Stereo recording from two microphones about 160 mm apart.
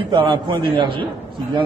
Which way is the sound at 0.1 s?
30° right (ahead or behind).